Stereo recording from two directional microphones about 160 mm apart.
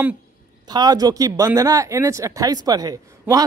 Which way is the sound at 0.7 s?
25° right (ahead or behind).